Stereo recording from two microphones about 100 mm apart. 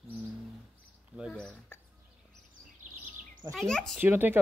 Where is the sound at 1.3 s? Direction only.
10° left (ahead or behind).